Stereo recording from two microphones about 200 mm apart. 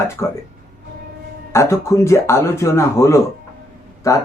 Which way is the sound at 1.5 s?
15° left (ahead or behind).